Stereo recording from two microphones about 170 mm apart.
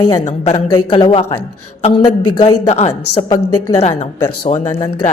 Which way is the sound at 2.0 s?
25° left (ahead or behind).